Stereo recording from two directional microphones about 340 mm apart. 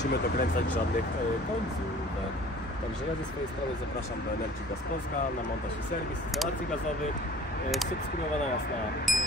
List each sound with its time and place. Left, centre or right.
0.0 s speech: left
9.1 s speech: centre